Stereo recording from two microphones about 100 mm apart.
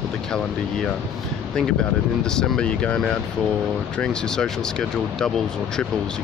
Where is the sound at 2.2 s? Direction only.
10° left (ahead or behind).